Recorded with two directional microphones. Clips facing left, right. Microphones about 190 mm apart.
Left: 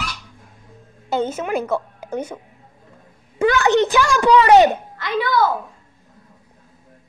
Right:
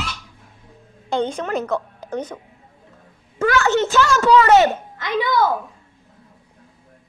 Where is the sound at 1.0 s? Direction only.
5° left (ahead or behind).